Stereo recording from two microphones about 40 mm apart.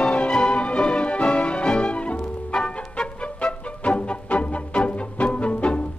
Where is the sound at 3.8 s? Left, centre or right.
Left.